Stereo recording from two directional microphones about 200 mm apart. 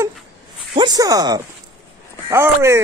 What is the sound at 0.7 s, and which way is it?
Speech, 20° right (ahead or behind).